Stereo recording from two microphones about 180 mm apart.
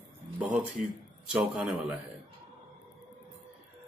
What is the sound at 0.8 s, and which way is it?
Speech, 45° right (ahead or behind).